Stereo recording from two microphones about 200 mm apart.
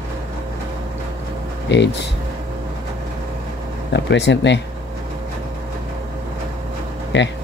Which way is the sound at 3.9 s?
60° left (ahead or behind).